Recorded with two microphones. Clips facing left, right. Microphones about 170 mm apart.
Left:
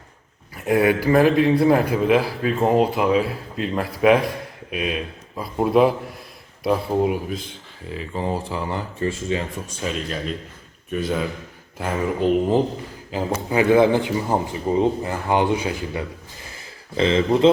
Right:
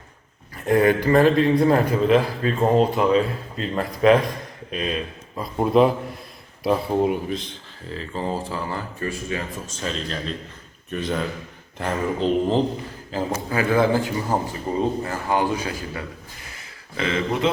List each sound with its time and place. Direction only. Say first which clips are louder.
0.5 s a man's voice: even; 10° left (ahead or behind)
9.8 s a man's voice: left 2 dB; 10° left (ahead or behind); by 17.5 s 30° left (ahead or behind)